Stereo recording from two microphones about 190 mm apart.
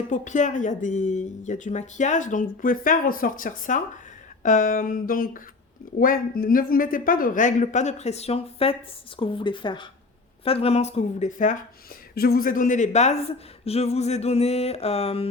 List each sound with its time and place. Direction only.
0.1 s speech: 40° left (ahead or behind)
12.1 s speech: 55° left (ahead or behind); by 15.3 s 30° left (ahead or behind)